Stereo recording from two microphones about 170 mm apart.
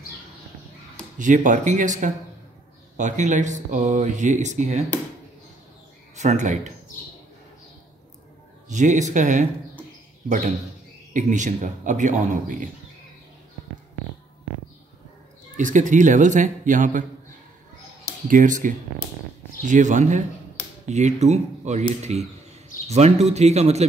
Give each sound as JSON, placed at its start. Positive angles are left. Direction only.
{"t": 1.1, "sound": "speech", "side_deg": -50}
{"t": 6.1, "sound": "speech", "side_deg": -45}
{"t": 8.6, "sound": "speech", "side_deg": -45}
{"t": 15.5, "sound": "speech", "side_deg": -45}
{"t": 18.3, "sound": "speech", "side_deg": -50}